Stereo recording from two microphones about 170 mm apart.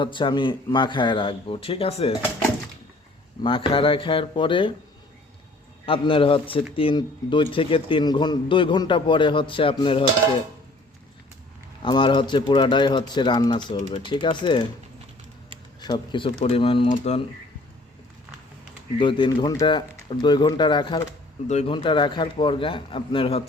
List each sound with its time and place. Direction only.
0.0 s a man's voice: 30° left (ahead or behind)
3.4 s speech: 30° left (ahead or behind)
5.8 s a man's voice: 30° left (ahead or behind)
11.8 s a man's voice: 25° left (ahead or behind)
15.8 s a man's voice: 25° left (ahead or behind)
18.9 s a man's voice: 30° left (ahead or behind)
21.4 s speech: 40° left (ahead or behind)